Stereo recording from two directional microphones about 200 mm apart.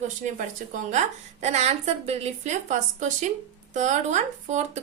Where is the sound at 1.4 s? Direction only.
35° right (ahead or behind).